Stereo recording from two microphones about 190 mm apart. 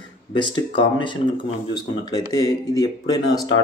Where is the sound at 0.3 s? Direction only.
25° left (ahead or behind).